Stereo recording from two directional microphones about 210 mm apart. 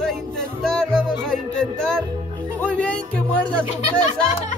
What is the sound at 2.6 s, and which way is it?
Speech, 5° left (ahead or behind).